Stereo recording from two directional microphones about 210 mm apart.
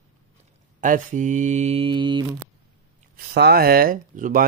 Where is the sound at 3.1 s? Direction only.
50° right (ahead or behind).